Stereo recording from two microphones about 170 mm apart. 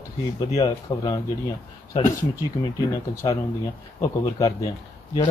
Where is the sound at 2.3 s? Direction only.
20° left (ahead or behind).